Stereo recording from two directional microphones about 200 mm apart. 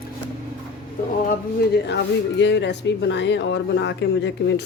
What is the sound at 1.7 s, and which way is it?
Speech, 55° left (ahead or behind).